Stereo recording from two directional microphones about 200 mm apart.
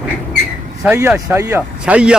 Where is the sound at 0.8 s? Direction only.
10° right (ahead or behind).